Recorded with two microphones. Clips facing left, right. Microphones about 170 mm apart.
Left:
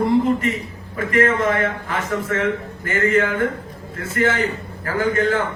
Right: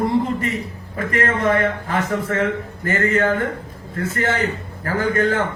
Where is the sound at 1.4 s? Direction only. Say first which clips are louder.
Right 2 dB; 40° right (ahead or behind).